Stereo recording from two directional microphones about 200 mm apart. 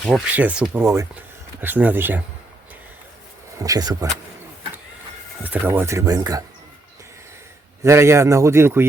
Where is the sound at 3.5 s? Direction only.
15° right (ahead or behind).